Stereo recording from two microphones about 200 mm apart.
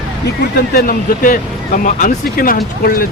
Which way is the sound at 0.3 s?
50° left (ahead or behind).